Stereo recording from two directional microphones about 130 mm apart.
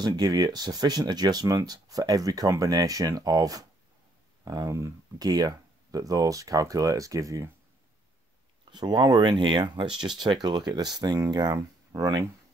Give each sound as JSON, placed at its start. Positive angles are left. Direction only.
{"t": 0.0, "sound": "speech", "side_deg": -30}
{"t": 8.7, "sound": "speech", "side_deg": -30}